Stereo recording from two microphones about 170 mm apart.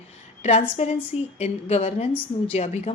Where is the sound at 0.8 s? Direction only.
40° left (ahead or behind).